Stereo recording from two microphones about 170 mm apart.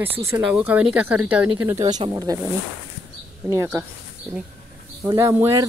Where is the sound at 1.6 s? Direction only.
20° right (ahead or behind).